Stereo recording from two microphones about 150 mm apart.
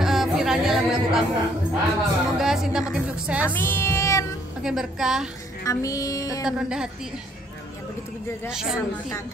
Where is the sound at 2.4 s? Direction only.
5° right (ahead or behind).